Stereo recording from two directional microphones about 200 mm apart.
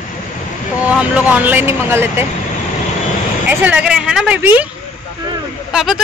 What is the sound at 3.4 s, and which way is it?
Speech, 5° right (ahead or behind).